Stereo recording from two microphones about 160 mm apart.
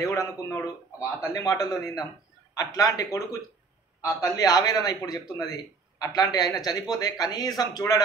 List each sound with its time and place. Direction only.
0.0 s a man's voice: 20° left (ahead or behind)